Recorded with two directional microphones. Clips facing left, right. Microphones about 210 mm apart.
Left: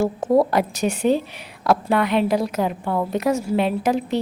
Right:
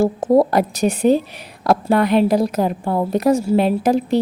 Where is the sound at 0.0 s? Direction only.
35° right (ahead or behind).